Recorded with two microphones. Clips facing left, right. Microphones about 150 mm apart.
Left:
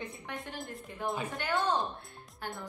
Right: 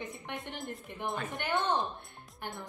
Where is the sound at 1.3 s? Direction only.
20° right (ahead or behind).